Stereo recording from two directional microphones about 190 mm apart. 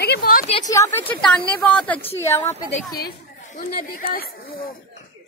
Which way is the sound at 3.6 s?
50° left (ahead or behind).